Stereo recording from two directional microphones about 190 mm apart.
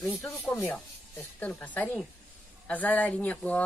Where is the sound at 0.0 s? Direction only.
10° left (ahead or behind).